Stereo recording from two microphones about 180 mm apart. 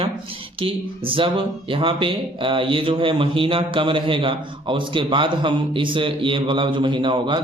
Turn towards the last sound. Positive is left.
turn(degrees=-25)  # may be behind; listen again after turning